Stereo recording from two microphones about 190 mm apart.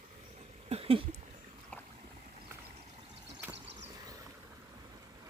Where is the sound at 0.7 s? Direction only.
30° right (ahead or behind).